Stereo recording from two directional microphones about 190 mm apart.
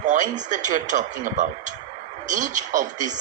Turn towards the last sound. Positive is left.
turn(degrees=-40)  # may be behind; listen again after turning